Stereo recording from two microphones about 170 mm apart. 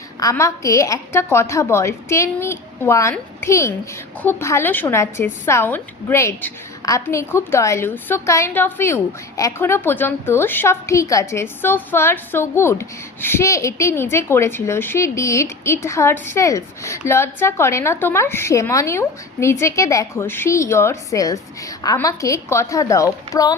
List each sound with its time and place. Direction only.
0.2 s a woman's voice: 20° left (ahead or behind)